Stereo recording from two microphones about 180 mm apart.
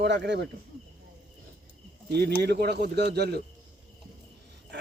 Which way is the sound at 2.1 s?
65° right (ahead or behind).